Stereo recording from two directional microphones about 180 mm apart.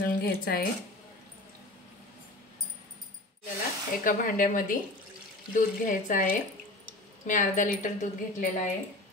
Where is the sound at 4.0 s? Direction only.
50° left (ahead or behind).